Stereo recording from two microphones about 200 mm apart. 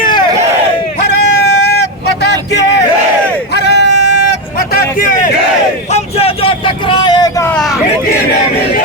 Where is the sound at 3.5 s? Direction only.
60° left (ahead or behind).